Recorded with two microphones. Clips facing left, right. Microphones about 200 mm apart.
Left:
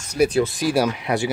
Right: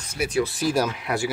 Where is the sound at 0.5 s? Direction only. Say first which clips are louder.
Left 3 dB; 15° left (ahead or behind).